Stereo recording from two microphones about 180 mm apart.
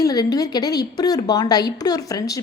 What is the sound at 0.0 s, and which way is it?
A woman's voice, 20° left (ahead or behind).